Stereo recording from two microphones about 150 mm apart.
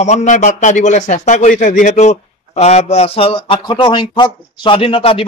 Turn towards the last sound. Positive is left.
turn(degrees=40)  # may be behind; listen again after turning